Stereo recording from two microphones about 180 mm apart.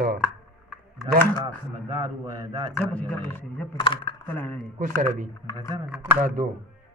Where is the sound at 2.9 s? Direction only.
5° left (ahead or behind).